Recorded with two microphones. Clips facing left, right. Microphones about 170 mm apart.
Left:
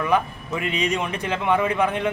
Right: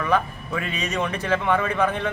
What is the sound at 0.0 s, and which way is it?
A man's voice, 15° left (ahead or behind).